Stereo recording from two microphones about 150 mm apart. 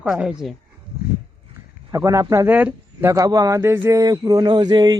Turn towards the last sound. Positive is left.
turn(degrees=-25)  # may be behind; listen again after turning